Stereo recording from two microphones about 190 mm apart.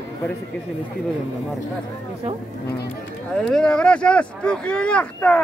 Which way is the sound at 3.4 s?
5° left (ahead or behind).